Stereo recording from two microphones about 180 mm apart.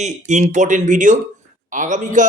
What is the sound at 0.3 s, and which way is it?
Speech, 40° right (ahead or behind).